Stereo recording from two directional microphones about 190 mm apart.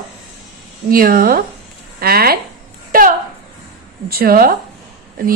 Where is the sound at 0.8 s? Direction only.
50° right (ahead or behind).